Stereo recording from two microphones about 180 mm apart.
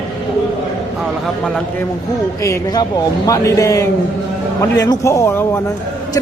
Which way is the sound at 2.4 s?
20° left (ahead or behind).